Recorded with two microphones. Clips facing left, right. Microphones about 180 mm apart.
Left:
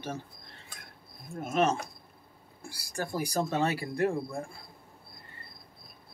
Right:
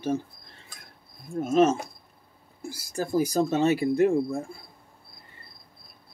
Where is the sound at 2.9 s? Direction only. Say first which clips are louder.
Right 7 dB; 25° right (ahead or behind).